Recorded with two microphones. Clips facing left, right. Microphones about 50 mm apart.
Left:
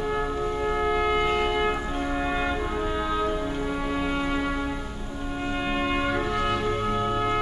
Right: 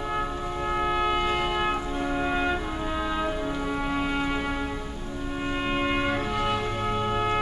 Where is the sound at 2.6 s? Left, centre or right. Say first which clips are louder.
Left 3 dB; centre.